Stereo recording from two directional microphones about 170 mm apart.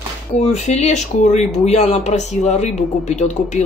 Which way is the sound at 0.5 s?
40° left (ahead or behind).